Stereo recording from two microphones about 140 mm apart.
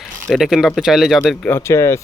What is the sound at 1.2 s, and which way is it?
Speech, 15° left (ahead or behind).